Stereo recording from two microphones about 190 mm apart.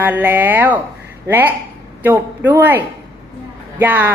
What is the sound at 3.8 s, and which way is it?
Speech, 10° right (ahead or behind).